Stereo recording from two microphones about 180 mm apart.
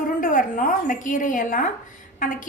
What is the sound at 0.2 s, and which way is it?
A woman's voice, 50° left (ahead or behind).